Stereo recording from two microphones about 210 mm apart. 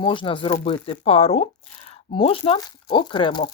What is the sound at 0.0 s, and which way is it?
Speech, 25° left (ahead or behind).